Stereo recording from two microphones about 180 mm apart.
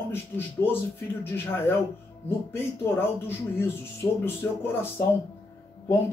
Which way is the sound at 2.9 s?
10° left (ahead or behind).